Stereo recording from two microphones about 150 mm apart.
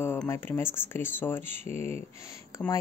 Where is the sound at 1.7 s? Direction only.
45° right (ahead or behind).